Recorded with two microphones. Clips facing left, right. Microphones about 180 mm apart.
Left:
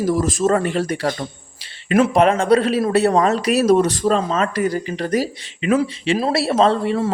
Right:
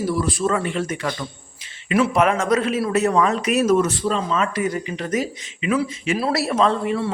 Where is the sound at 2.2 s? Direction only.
30° left (ahead or behind).